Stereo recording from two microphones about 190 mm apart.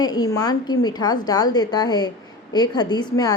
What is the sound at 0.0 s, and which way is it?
A woman's voice, 20° left (ahead or behind).